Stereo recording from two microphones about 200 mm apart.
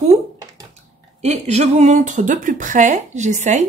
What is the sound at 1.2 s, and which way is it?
Speech, 35° right (ahead or behind).